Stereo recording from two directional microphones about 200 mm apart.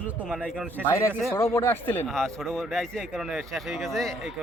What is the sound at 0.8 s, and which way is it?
A man's voice, 15° left (ahead or behind).